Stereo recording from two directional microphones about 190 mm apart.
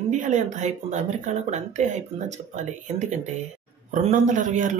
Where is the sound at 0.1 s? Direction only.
40° right (ahead or behind).